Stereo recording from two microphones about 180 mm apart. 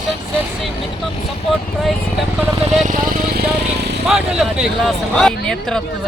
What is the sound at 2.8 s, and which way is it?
Speech, 45° right (ahead or behind).